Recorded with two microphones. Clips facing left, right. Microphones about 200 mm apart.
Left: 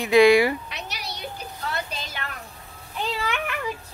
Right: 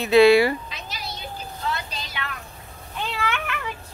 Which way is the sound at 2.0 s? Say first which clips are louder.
Right 1 dB; 45° left (ahead or behind).